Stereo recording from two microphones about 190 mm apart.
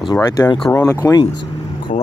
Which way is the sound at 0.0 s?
20° left (ahead or behind).